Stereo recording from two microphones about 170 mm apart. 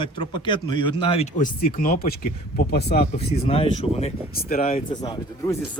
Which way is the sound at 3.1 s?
35° left (ahead or behind).